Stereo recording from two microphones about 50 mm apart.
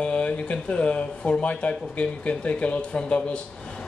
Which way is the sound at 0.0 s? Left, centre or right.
Left.